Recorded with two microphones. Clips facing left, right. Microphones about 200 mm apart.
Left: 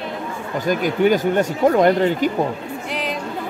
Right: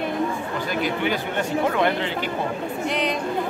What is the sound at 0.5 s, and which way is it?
Speech, 45° left (ahead or behind).